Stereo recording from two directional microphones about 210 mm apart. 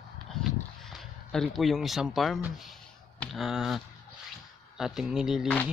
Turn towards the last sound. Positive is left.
turn(degrees=0)  # may be behind; listen again after turning